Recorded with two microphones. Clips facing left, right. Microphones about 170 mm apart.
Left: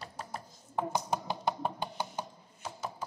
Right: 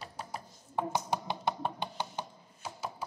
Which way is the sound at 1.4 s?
10° left (ahead or behind).